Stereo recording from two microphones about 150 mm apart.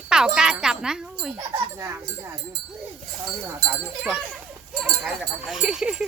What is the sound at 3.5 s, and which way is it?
Speech, 15° right (ahead or behind).